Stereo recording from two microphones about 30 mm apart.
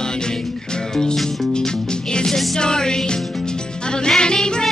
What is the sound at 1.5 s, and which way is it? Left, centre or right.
Music, left.